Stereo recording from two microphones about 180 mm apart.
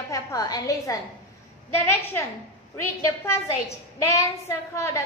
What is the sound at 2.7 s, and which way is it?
A woman's voice, 15° left (ahead or behind).